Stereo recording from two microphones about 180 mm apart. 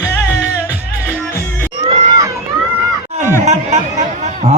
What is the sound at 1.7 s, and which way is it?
Crowd, 30° right (ahead or behind).